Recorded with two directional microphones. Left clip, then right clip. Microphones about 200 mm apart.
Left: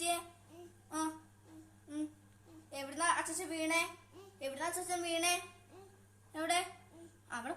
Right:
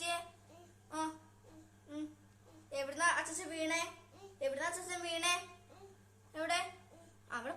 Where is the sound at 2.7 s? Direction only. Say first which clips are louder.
Right 1 dB; 20° right (ahead or behind).